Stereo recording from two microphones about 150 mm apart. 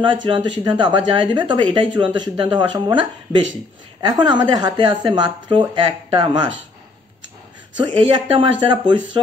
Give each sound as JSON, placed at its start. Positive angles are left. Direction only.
{"t": 0.0, "sound": "a woman's voice", "side_deg": -30}
{"t": 7.8, "sound": "a woman's voice", "side_deg": -35}